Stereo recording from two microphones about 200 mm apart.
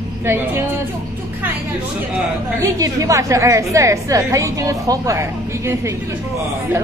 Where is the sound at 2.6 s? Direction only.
15° right (ahead or behind).